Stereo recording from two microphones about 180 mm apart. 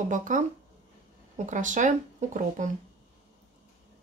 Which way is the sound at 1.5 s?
45° right (ahead or behind).